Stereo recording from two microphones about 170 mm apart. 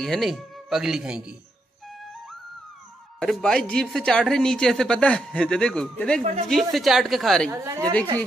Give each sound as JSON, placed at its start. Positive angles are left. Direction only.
{"t": 0.0, "sound": "speech", "side_deg": 0}
{"t": 3.2, "sound": "speech", "side_deg": 5}
{"t": 7.5, "sound": "a woman's voice", "side_deg": -20}